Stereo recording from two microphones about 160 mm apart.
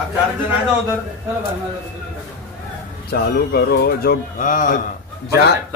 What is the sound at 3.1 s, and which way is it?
Speech, 75° left (ahead or behind).